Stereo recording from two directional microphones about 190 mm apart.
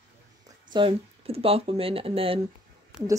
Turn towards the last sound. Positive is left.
turn(degrees=-5)  # may be behind; listen again after turning